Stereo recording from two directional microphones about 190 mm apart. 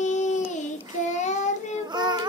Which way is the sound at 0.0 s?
40° left (ahead or behind).